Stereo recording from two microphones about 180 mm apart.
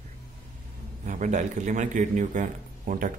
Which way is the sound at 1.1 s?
45° right (ahead or behind).